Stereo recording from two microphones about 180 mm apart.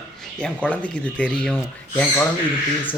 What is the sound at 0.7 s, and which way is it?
Speech, 5° left (ahead or behind).